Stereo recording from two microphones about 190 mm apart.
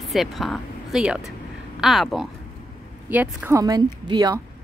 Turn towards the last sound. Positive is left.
turn(degrees=-20)  # may be behind; listen again after turning